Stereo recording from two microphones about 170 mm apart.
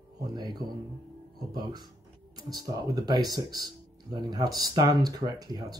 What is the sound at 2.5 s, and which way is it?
Speech, 20° right (ahead or behind).